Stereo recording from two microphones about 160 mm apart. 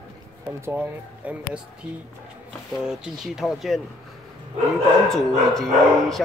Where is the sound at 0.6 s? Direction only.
15° right (ahead or behind).